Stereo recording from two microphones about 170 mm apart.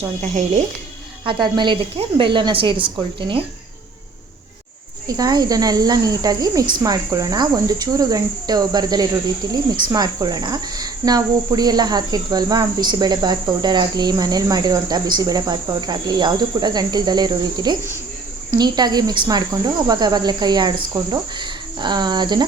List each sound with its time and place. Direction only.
0.2 s speech: 40° right (ahead or behind)
1.3 s a woman's voice: 25° right (ahead or behind)
5.0 s a woman's voice: 20° right (ahead or behind)